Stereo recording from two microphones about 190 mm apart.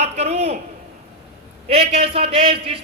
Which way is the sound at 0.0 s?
35° right (ahead or behind).